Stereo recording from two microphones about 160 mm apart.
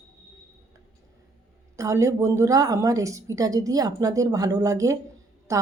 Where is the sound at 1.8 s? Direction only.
20° right (ahead or behind).